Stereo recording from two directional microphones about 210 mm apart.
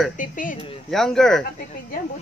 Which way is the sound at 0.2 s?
40° left (ahead or behind).